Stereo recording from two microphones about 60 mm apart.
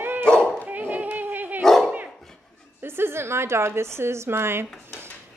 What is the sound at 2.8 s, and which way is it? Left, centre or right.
A woman's voice, right.